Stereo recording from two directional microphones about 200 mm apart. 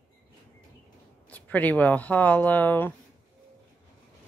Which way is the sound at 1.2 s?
5° left (ahead or behind).